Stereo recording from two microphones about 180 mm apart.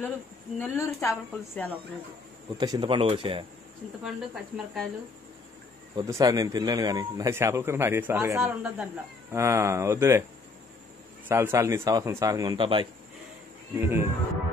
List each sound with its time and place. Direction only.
0.6 s a woman's voice: 15° left (ahead or behind)
2.5 s speech: 20° right (ahead or behind)
4.0 s speech: 5° right (ahead or behind)
5.9 s speech: 20° right (ahead or behind)
11.2 s speech: 15° right (ahead or behind)
13.7 s speech: 15° right (ahead or behind)